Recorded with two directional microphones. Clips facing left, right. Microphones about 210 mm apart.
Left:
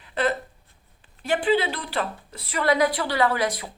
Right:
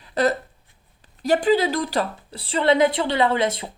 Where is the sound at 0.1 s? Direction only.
40° right (ahead or behind).